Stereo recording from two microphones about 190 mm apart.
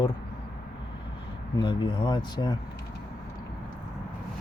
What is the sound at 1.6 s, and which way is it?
Speech, 25° left (ahead or behind).